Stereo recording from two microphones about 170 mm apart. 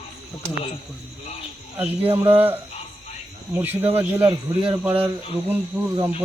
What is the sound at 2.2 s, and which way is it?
Speech, 35° right (ahead or behind).